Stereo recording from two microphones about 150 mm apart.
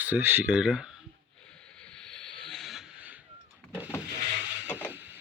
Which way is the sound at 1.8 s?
5° left (ahead or behind).